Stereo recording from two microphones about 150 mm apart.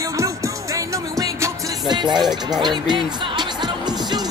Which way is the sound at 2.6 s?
30° right (ahead or behind).